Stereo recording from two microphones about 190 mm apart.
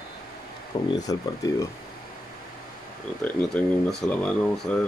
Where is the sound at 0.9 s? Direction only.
20° left (ahead or behind).